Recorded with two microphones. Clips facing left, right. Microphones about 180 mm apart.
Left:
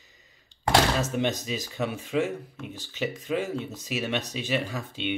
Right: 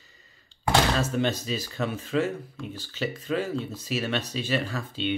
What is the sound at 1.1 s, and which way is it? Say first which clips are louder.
Speech: right 1 dB; 15° left (ahead or behind).